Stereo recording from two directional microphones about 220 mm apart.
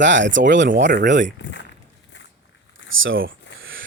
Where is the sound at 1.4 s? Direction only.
55° left (ahead or behind).